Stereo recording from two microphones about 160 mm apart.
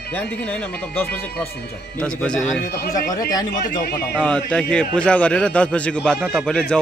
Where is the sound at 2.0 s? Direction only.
5° left (ahead or behind).